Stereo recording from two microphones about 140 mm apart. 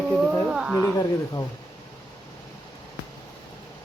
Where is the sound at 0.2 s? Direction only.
5° right (ahead or behind).